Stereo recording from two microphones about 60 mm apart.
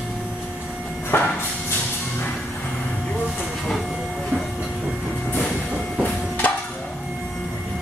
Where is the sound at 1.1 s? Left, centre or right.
Left.